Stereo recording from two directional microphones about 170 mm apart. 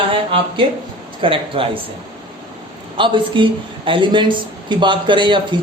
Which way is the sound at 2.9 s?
30° right (ahead or behind).